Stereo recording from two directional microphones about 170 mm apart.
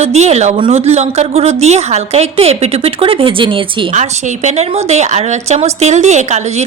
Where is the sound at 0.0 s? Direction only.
40° right (ahead or behind).